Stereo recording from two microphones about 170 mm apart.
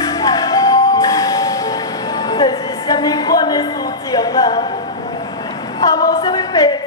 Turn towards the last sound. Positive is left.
turn(degrees=20)  # may be behind; listen again after turning